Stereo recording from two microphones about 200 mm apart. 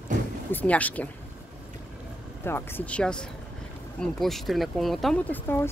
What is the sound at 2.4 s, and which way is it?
Speech, 10° left (ahead or behind).